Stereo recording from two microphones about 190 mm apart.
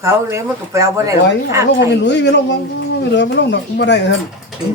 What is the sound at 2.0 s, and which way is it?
Speech, 65° left (ahead or behind).